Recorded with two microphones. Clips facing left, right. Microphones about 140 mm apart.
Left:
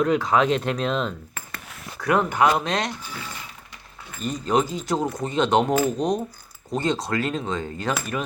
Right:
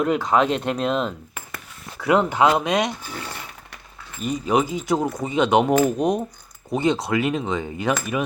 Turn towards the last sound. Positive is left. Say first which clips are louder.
# right 3 dB
turn(degrees=-15)  # may be behind; listen again after turning